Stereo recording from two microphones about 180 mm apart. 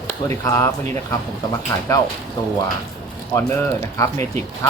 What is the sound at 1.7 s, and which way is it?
Speech, 15° left (ahead or behind).